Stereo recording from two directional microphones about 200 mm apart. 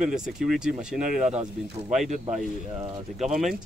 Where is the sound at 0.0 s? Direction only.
Centre (ahead or behind).